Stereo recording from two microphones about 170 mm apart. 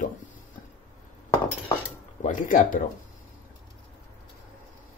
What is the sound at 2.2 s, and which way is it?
Speech, 50° left (ahead or behind).